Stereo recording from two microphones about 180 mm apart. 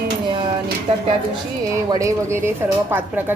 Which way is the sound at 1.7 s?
20° right (ahead or behind).